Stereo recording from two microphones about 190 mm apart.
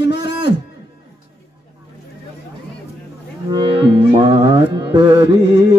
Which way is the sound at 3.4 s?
25° right (ahead or behind).